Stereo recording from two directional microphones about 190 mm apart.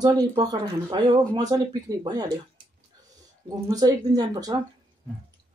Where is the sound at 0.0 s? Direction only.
20° right (ahead or behind).